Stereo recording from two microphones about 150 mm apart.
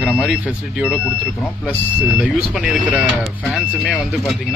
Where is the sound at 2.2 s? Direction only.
5° right (ahead or behind).